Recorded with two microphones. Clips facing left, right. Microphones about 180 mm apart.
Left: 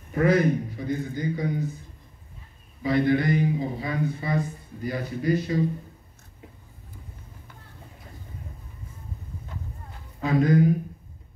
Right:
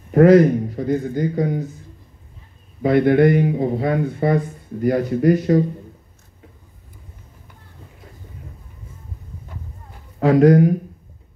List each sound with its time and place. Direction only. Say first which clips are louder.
0.1 s a man's voice: right 11 dB; 70° right (ahead or behind)
0.8 s a man's voice: right 7 dB; 50° right (ahead or behind)
2.8 s a man's voice: right 8 dB; 55° right (ahead or behind)
10.2 s speech: right 8 dB; 70° right (ahead or behind)